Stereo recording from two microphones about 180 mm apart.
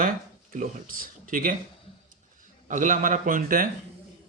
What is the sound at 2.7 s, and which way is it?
Speech, 45° right (ahead or behind).